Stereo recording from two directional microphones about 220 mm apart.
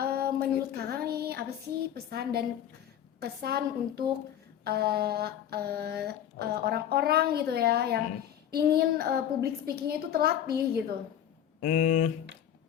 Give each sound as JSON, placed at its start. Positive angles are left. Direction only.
{"t": 0.0, "sound": "female singing", "side_deg": -45}
{"t": 2.0, "sound": "mantra", "side_deg": -45}
{"t": 11.6, "sound": "speech", "side_deg": 35}